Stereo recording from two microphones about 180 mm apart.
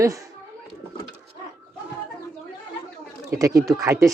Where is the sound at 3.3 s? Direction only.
15° right (ahead or behind).